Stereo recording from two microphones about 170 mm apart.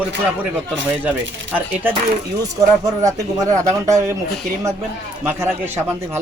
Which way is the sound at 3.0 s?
20° right (ahead or behind).